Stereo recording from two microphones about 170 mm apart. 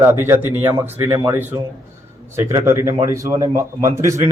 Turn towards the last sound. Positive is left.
turn(degrees=-15)  # may be behind; listen again after turning